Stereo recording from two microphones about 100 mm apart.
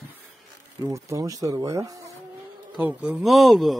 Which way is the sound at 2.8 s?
15° right (ahead or behind).